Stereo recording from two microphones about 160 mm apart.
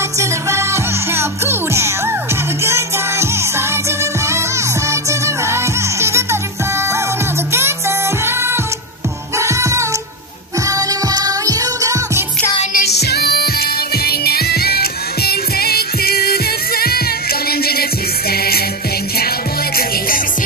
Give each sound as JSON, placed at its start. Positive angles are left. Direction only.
{"t": 0.2, "sound": "music", "side_deg": -15}
{"t": 8.3, "sound": "music", "side_deg": -15}
{"t": 12.7, "sound": "music", "side_deg": 90}